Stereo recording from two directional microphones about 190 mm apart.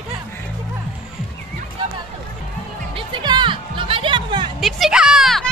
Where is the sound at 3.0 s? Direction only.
25° right (ahead or behind).